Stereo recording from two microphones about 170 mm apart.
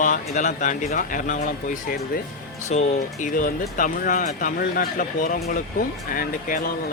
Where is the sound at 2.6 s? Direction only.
40° left (ahead or behind).